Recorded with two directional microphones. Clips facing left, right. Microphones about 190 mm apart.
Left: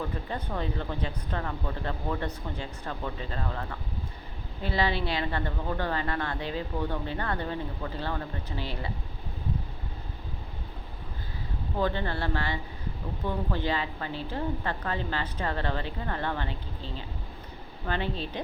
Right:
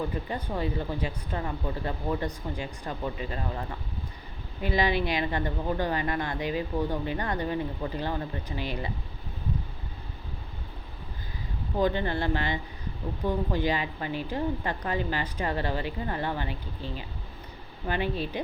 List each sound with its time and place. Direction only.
0.3 s a woman's voice: 10° right (ahead or behind)
4.6 s a woman's voice: 15° right (ahead or behind)
11.8 s a woman's voice: 15° right (ahead or behind)